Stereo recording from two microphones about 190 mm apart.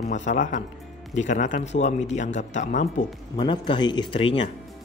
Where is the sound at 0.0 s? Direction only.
40° left (ahead or behind).